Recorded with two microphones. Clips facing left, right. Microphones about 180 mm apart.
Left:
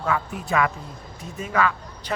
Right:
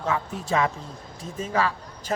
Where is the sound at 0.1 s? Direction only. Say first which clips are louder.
Left 2 dB; 25° right (ahead or behind).